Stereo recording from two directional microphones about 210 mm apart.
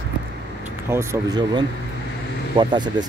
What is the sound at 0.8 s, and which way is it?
Speech, 10° right (ahead or behind).